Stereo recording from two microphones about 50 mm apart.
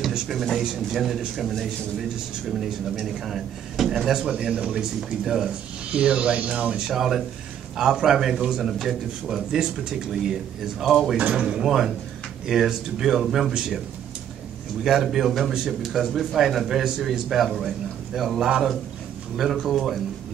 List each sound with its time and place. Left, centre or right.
0.6 s speech: centre
2.6 s a man's voice: centre
5.9 s speech: right
6.9 s a man's voice: centre
11.3 s a man's voice: centre
13.5 s a man's voice: centre
14.8 s speech: centre
19.6 s speech: centre